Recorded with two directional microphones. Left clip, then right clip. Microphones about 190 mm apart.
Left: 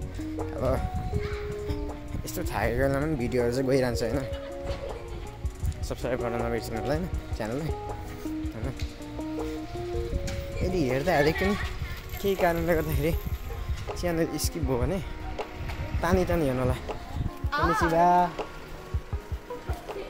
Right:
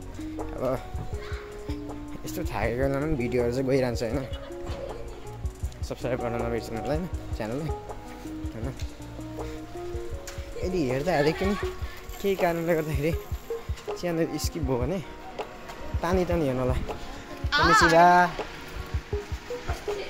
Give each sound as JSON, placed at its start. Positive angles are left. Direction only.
{"t": 0.4, "sound": "music", "side_deg": 0}
{"t": 2.2, "sound": "speech", "side_deg": 0}
{"t": 5.9, "sound": "speech", "side_deg": 0}
{"t": 10.6, "sound": "speech", "side_deg": 10}
{"t": 17.9, "sound": "speech", "side_deg": -20}